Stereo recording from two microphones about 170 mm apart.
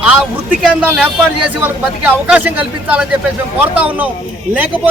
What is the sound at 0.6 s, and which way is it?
Speech, 5° right (ahead or behind).